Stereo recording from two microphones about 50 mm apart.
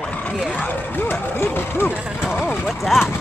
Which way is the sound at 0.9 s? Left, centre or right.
Left.